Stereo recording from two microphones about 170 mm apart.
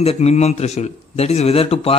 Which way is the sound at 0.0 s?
40° left (ahead or behind).